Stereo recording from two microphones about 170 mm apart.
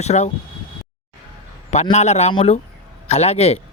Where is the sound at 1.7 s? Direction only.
40° left (ahead or behind).